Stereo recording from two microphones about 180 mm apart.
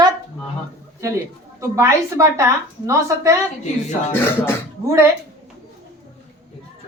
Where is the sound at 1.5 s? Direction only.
15° right (ahead or behind).